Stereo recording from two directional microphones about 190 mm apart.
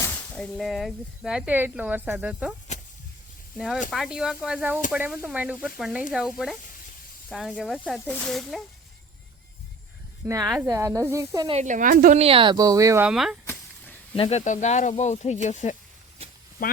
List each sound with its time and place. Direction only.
0.0 s speech: 10° left (ahead or behind)
2.7 s vehicle: 40° left (ahead or behind)
3.8 s speech: centre (ahead or behind)
10.2 s speech: 20° right (ahead or behind)
11.4 s a woman's voice: 35° right (ahead or behind)
12.2 s speech: 30° right (ahead or behind)
13.1 s speech: centre (ahead or behind)
13.5 s a sound: 10° left (ahead or behind)
14.2 s speech: 35° left (ahead or behind)